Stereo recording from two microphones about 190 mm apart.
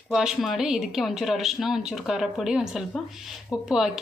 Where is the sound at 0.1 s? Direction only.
Centre (ahead or behind).